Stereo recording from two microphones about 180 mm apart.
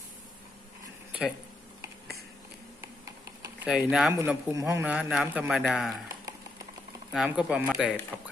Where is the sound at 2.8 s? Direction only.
15° right (ahead or behind).